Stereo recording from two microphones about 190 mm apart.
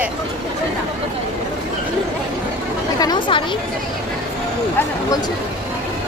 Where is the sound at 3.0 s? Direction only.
25° left (ahead or behind).